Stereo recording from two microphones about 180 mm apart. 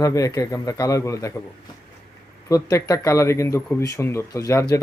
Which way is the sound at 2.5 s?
20° left (ahead or behind).